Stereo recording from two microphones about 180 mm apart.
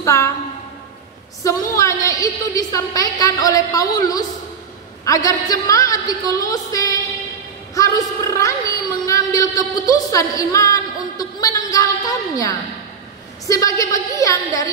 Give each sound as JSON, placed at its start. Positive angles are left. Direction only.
{"t": 0.0, "sound": "a woman's voice", "side_deg": 15}
{"t": 1.4, "sound": "a woman's voice", "side_deg": 15}
{"t": 9.0, "sound": "a sound", "side_deg": 20}
{"t": 13.5, "sound": "a woman's voice", "side_deg": 20}